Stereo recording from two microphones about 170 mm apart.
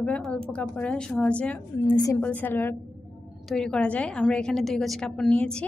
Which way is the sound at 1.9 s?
20° left (ahead or behind).